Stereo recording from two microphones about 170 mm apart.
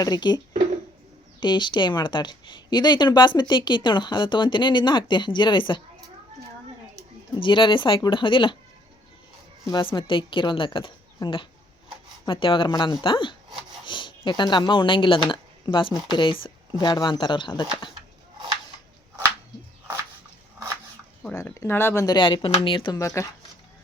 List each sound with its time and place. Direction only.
0.0 s speech: 25° left (ahead or behind)
7.3 s speech: 30° left (ahead or behind)
9.6 s a woman's voice: 25° left (ahead or behind)
21.3 s speech: 15° left (ahead or behind)